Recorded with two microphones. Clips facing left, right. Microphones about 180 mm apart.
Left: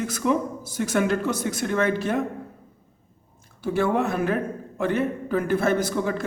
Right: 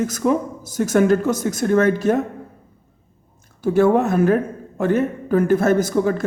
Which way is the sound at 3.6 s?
45° right (ahead or behind).